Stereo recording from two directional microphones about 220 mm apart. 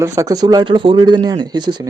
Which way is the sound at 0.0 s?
15° right (ahead or behind).